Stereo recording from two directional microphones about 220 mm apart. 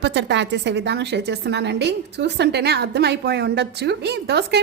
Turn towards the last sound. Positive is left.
turn(degrees=-50)  # may be behind; listen again after turning